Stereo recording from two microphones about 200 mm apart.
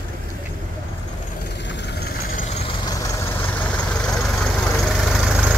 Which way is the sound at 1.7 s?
55° left (ahead or behind).